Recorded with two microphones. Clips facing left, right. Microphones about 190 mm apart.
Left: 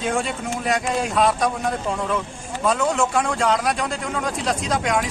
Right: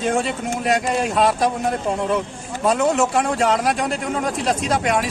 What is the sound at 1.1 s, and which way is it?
Speech, 25° right (ahead or behind).